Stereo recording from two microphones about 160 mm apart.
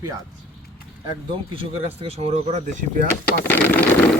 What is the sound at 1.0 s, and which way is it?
Speech, 35° right (ahead or behind).